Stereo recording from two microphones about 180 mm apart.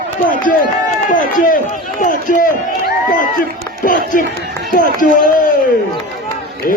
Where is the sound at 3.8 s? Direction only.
50° left (ahead or behind).